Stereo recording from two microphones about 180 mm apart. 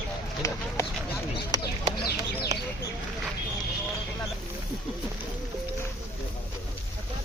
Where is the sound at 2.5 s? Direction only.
20° right (ahead or behind).